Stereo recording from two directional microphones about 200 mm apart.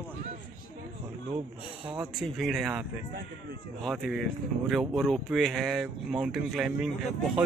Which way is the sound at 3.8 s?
Centre (ahead or behind).